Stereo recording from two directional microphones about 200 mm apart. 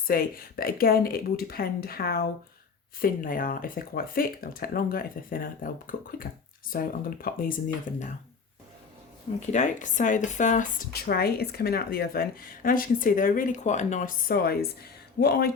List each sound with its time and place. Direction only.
0.1 s speech: 45° left (ahead or behind)
9.5 s speech: 40° left (ahead or behind)